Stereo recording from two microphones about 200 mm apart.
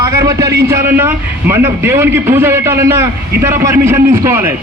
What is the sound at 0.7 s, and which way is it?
A man's voice, 10° right (ahead or behind).